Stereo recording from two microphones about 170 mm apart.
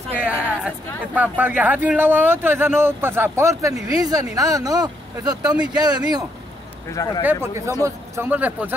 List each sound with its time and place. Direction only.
0.1 s speech: 10° right (ahead or behind); by 6.2 s 25° right (ahead or behind)
7.0 s speech: 20° left (ahead or behind)
7.8 s speech: 10° right (ahead or behind)